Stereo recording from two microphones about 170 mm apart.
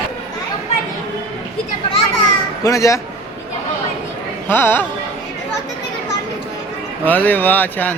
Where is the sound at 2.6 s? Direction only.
20° left (ahead or behind).